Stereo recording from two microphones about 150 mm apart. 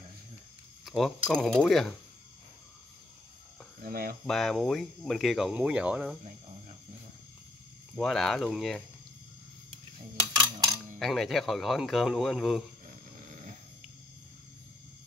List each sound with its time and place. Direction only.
0.8 s speech: centre (ahead or behind)
3.8 s speech: 70° right (ahead or behind)
4.3 s speech: centre (ahead or behind)
7.9 s speech: 5° left (ahead or behind)
11.0 s speech: centre (ahead or behind)